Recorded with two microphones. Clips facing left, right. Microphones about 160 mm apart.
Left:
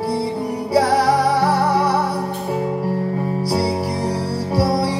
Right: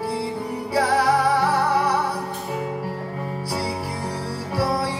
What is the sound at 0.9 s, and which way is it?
Music, 35° left (ahead or behind).